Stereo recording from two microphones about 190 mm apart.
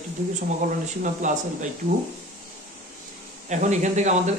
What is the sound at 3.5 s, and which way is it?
Speech, 40° right (ahead or behind).